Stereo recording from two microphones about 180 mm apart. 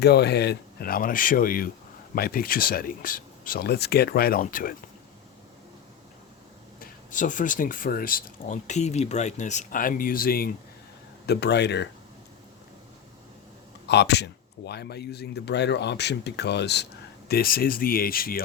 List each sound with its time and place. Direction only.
0.0 s speech: 65° left (ahead or behind)
6.7 s speech: 45° left (ahead or behind)
11.3 s speech: 65° left (ahead or behind)
13.8 s speech: 70° left (ahead or behind)
17.2 s speech: 55° left (ahead or behind)